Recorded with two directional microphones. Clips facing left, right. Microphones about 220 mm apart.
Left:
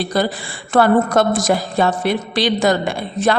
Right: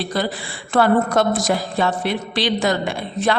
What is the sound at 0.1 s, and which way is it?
A woman's voice, 40° left (ahead or behind).